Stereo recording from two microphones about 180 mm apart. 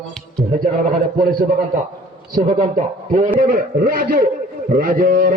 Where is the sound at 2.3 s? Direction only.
40° right (ahead or behind).